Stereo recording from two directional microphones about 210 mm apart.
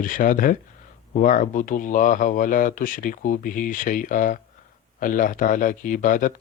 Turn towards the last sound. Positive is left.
turn(degrees=40)  # may be behind; listen again after turning